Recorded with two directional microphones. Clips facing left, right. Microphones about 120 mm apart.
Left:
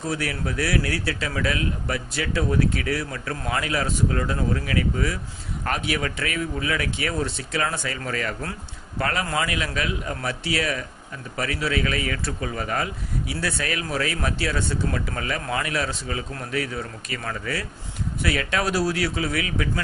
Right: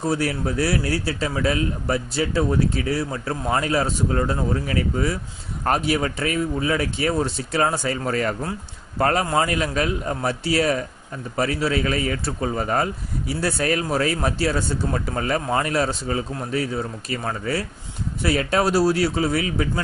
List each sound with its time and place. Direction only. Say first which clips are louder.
0.0 s a man's voice: right 5 dB; 35° right (ahead or behind)